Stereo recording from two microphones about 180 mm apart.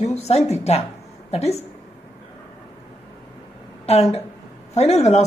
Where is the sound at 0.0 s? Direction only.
40° left (ahead or behind).